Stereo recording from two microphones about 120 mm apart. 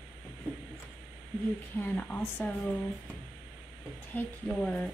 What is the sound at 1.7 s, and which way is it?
Speech, 15° left (ahead or behind).